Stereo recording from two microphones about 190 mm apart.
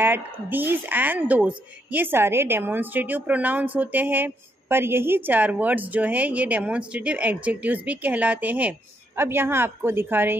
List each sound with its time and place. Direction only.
0.0 s a woman's voice: 10° right (ahead or behind)